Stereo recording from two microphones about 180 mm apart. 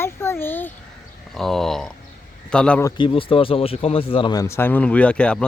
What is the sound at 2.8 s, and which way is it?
Speech, 20° left (ahead or behind).